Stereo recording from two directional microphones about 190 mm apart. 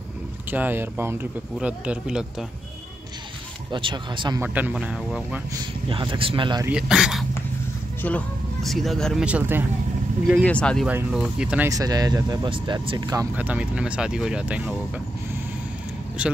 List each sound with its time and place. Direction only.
0.5 s speech: 10° right (ahead or behind)
3.7 s speech: 25° right (ahead or behind)
4.4 s speech: 10° right (ahead or behind)
5.5 s speech: 25° right (ahead or behind)
6.6 s speech: 5° right (ahead or behind)
10.2 s speech: 5° left (ahead or behind)
10.9 s speech: 5° right (ahead or behind)
16.2 s speech: 5° right (ahead or behind)